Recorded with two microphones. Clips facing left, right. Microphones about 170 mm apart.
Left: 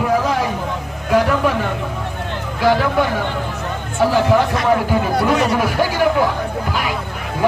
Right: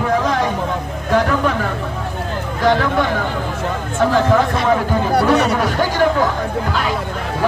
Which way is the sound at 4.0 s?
10° left (ahead or behind).